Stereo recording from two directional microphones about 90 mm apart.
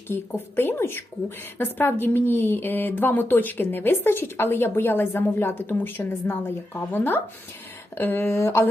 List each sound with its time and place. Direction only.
0.1 s a woman's voice: 25° left (ahead or behind)